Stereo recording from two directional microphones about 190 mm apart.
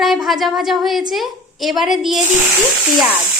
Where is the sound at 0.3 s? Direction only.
Centre (ahead or behind).